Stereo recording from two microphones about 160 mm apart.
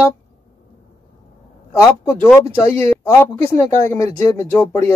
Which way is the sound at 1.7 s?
15° left (ahead or behind).